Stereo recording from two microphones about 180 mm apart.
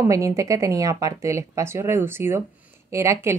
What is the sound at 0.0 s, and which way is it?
A woman's voice, 15° right (ahead or behind).